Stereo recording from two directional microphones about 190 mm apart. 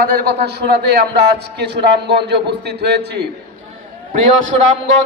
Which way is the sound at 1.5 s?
60° right (ahead or behind).